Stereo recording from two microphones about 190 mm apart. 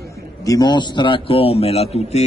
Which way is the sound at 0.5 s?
20° left (ahead or behind).